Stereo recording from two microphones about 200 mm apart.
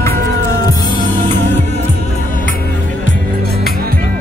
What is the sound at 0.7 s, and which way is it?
Music, 15° left (ahead or behind).